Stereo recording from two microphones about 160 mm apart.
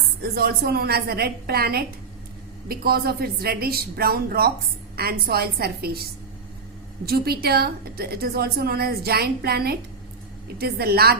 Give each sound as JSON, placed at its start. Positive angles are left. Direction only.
{"t": 0.2, "sound": "a woman's voice", "side_deg": -75}
{"t": 7.0, "sound": "a woman's voice", "side_deg": -75}